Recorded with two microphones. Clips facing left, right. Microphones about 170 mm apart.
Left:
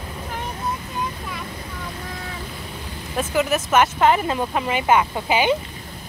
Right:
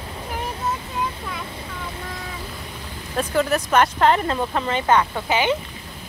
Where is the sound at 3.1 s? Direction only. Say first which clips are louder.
Even; 5° left (ahead or behind).